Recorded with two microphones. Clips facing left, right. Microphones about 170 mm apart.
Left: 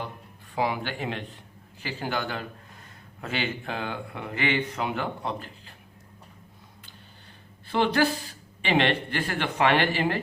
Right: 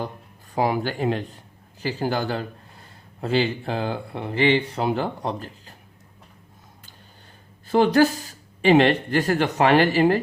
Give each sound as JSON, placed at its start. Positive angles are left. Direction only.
{"t": 0.5, "sound": "speech", "side_deg": -40}
{"t": 7.7, "sound": "speech", "side_deg": -40}